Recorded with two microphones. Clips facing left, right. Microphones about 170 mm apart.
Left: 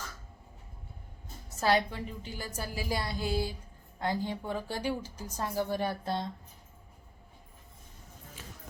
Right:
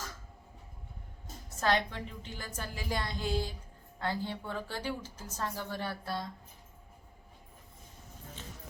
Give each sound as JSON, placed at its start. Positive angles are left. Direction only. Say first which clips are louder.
{"t": 1.5, "sound": "a woman's voice", "louder": "left 3 dB", "side_deg": 10}